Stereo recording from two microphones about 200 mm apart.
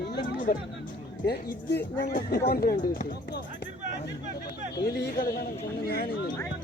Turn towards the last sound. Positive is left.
turn(degrees=50)  # may be behind; listen again after turning